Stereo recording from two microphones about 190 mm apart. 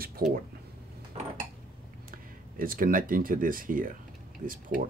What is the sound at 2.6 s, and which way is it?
Speech, 50° right (ahead or behind).